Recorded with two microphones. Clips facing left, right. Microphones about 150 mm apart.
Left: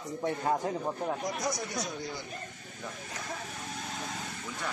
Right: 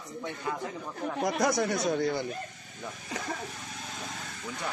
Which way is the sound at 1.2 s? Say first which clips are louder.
Right 7 dB; 60° right (ahead or behind).